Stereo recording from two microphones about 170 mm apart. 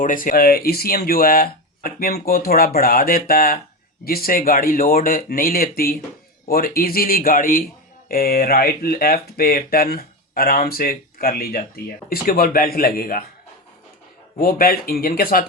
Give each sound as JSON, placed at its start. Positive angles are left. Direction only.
{"t": 0.0, "sound": "speech", "side_deg": 50}
{"t": 14.4, "sound": "speech", "side_deg": 60}